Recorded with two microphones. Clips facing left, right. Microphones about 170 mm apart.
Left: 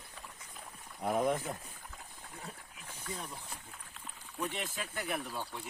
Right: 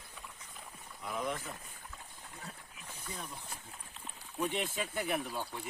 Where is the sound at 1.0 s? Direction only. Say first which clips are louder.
Left 7 dB; 50° left (ahead or behind).